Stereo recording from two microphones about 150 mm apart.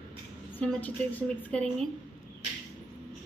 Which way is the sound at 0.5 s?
10° left (ahead or behind).